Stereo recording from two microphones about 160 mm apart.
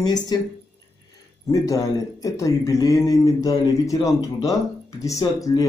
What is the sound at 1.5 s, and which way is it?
Speech, 20° left (ahead or behind).